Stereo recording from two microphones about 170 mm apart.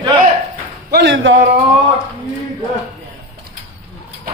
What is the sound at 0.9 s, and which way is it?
Speech, 80° right.